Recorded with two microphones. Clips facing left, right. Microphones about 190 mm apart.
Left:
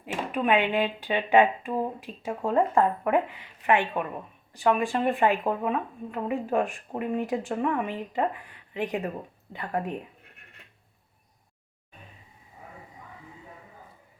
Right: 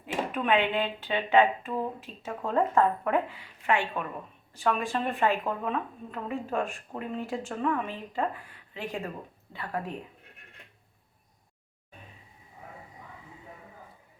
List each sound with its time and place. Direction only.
0.0 s speech: 10° left (ahead or behind)